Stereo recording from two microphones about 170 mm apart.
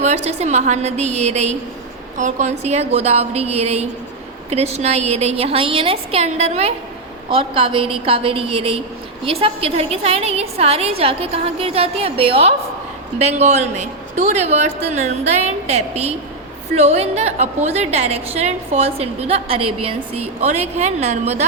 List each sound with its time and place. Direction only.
0.0 s a woman's voice: 40° right (ahead or behind)